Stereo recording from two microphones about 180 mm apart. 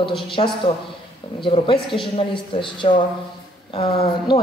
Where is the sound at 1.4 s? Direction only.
30° left (ahead or behind).